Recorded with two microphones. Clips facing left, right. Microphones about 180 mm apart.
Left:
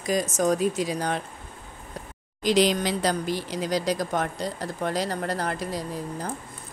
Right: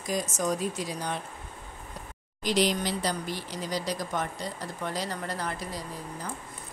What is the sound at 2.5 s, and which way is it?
Speech, 90° left.